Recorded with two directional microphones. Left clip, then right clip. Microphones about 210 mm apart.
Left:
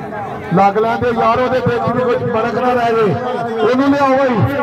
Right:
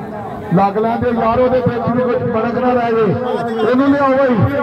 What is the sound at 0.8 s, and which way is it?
A man's voice, 55° left (ahead or behind).